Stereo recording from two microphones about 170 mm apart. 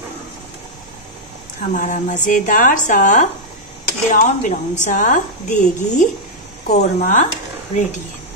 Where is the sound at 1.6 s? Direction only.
50° left (ahead or behind).